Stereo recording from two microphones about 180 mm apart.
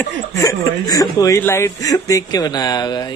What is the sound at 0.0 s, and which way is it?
Speech, 15° left (ahead or behind).